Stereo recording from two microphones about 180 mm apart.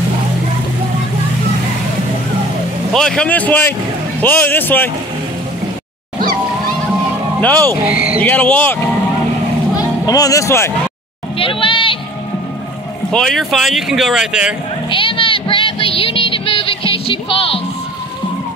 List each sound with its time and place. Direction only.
2.9 s speech: 5° left (ahead or behind)
7.3 s speech: 10° left (ahead or behind)
7.9 s speech: 5° right (ahead or behind)
8.2 s speech: 10° left (ahead or behind)
9.8 s speech: 20° left (ahead or behind)
11.3 s speech: 30° left (ahead or behind)
13.1 s speech: centre (ahead or behind)
14.9 s a sound: 30° left (ahead or behind)